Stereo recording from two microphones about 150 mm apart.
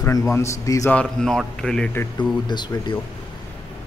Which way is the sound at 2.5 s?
30° left (ahead or behind).